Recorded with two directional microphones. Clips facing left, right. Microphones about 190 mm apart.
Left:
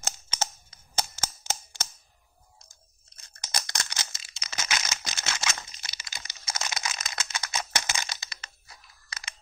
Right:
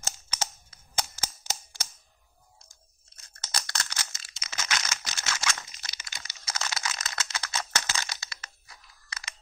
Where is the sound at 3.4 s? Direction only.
15° left (ahead or behind).